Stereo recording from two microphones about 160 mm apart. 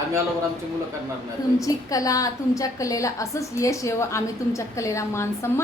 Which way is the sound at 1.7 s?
20° left (ahead or behind).